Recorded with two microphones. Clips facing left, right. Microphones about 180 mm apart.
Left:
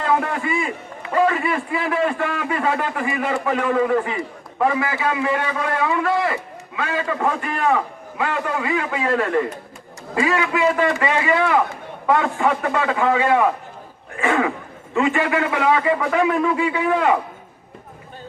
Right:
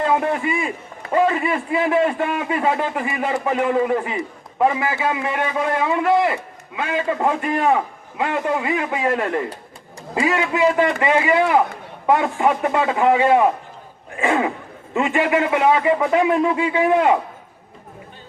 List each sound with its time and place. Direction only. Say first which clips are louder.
0.0 s a man's voice: right 2 dB; 20° right (ahead or behind)
14.2 s a sound: even; 20° right (ahead or behind)
14.9 s a man's voice: right 1 dB; 20° right (ahead or behind)